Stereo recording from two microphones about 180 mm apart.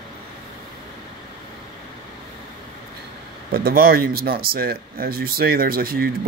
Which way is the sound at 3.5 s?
55° right (ahead or behind).